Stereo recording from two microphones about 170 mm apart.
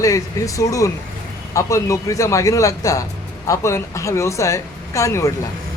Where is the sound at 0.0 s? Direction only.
20° left (ahead or behind).